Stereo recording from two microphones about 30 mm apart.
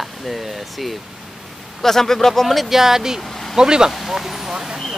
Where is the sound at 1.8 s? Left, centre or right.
Centre.